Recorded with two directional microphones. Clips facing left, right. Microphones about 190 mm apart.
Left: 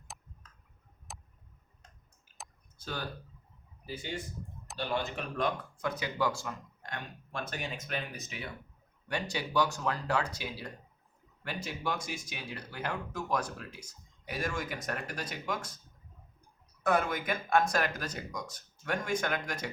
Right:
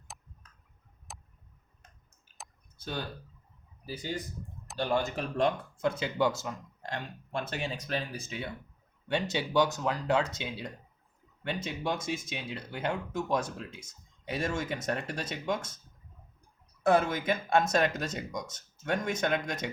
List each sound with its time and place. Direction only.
0.1 s tick-tock: centre (ahead or behind)
1.1 s a sound: centre (ahead or behind)
2.8 s speech: 20° right (ahead or behind)
3.8 s speech: 40° right (ahead or behind)
16.8 s speech: 25° right (ahead or behind)